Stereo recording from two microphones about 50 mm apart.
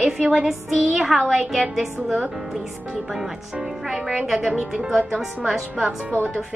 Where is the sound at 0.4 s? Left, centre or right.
Centre.